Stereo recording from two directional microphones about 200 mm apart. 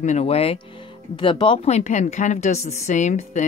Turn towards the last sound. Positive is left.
turn(degrees=35)  # may be behind; listen again after turning